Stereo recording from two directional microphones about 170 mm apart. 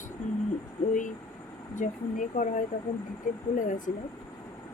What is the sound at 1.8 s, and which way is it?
Speech, 50° left (ahead or behind).